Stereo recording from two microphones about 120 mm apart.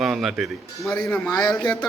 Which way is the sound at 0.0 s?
Centre (ahead or behind).